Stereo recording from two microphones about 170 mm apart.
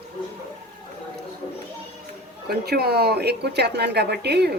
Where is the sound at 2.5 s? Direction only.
65° right (ahead or behind).